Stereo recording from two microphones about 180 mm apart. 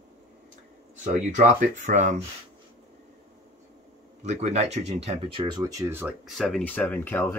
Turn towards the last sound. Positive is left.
turn(degrees=10)  # may be behind; listen again after turning